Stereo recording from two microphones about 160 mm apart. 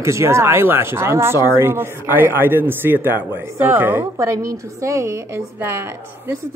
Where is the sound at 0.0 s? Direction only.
15° right (ahead or behind).